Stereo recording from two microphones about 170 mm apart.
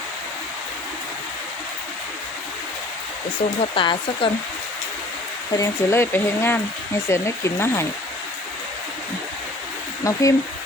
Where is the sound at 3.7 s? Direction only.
30° left (ahead or behind).